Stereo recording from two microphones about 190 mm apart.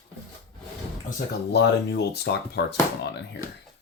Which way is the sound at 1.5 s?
60° left (ahead or behind).